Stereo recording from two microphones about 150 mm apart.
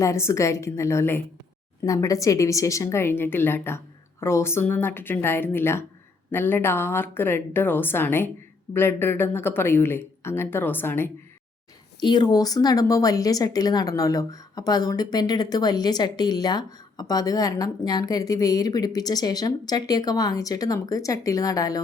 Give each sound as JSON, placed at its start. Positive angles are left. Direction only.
{"t": 0.0, "sound": "speech", "side_deg": 20}
{"t": 11.9, "sound": "speech", "side_deg": 30}